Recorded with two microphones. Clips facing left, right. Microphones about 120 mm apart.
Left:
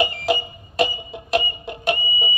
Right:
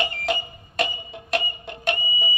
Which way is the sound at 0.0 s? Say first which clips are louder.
Left 5 dB; 5° left (ahead or behind).